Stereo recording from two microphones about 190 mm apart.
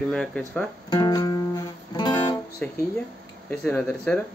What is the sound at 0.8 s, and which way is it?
Music, 20° left (ahead or behind).